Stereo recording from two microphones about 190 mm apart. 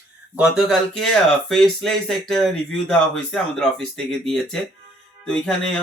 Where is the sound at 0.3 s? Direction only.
Centre (ahead or behind).